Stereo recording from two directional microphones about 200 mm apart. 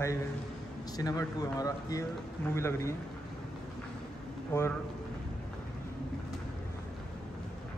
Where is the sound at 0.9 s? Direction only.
20° left (ahead or behind).